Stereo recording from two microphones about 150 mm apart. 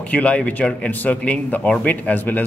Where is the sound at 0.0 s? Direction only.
10° left (ahead or behind).